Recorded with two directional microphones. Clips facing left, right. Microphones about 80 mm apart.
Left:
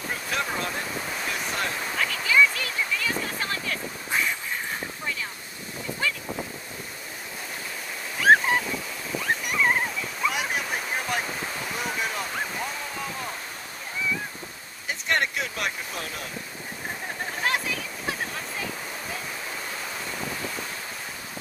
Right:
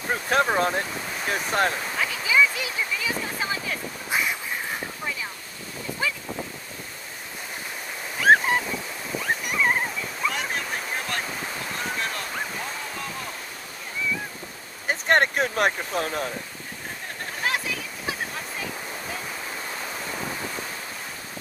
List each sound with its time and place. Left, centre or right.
0.1 s speech: right
2.0 s a sound: centre
8.2 s ocean: centre
9.2 s waves: centre
14.9 s speech: right
17.4 s a sound: centre